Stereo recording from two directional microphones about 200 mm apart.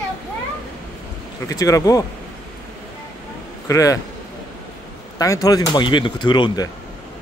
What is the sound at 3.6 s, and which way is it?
Speech, 15° left (ahead or behind).